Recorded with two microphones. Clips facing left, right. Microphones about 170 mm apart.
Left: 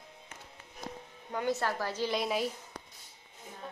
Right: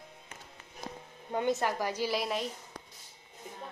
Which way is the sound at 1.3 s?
25° right (ahead or behind).